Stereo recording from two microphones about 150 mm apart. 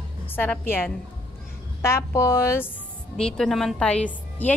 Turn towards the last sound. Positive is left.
turn(degrees=10)  # may be behind; listen again after turning